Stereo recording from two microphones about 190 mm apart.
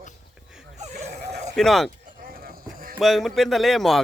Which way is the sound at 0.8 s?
35° right (ahead or behind).